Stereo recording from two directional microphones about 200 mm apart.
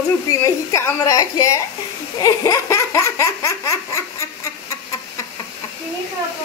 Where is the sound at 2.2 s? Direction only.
15° left (ahead or behind).